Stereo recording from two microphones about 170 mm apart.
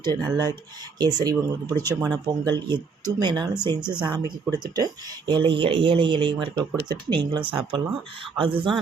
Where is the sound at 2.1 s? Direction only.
25° right (ahead or behind).